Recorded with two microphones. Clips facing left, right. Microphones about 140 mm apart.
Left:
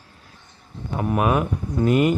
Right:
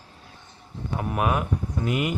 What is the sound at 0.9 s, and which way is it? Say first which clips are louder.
Speech: left 5 dB; 25° left (ahead or behind).